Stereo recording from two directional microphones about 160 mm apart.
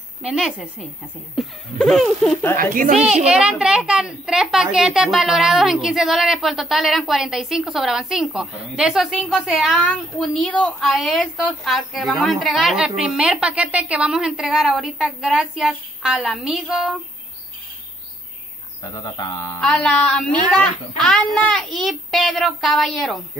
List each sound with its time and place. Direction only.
0.2 s a woman's voice: 5° right (ahead or behind)
2.5 s a child's voice: 60° right (ahead or behind)
3.3 s a woman's voice: 5° right (ahead or behind)
18.8 s speech: 20° left (ahead or behind)
19.6 s a woman's voice: 5° left (ahead or behind)